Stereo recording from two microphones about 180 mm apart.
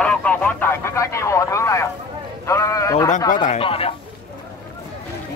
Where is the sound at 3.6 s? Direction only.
30° left (ahead or behind).